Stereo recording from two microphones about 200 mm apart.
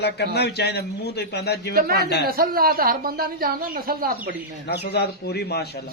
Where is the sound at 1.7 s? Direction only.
50° right (ahead or behind).